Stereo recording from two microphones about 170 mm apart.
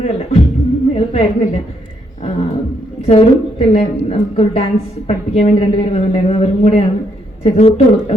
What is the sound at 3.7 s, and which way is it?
A woman's voice, 40° left (ahead or behind).